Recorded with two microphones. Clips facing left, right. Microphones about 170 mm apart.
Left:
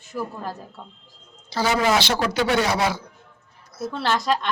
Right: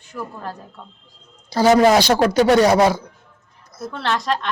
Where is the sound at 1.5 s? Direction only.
45° right (ahead or behind).